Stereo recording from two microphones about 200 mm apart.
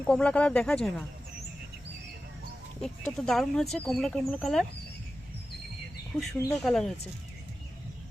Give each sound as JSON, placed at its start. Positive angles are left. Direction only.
{"t": 0.0, "sound": "speech", "side_deg": 5}
{"t": 2.8, "sound": "speech", "side_deg": 5}
{"t": 6.3, "sound": "speech", "side_deg": 10}